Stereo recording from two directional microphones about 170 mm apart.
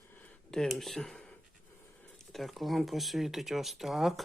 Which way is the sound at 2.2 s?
Centre (ahead or behind).